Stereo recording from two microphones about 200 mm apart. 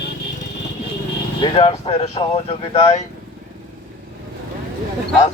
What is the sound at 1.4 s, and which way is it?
Speech, 30° left (ahead or behind).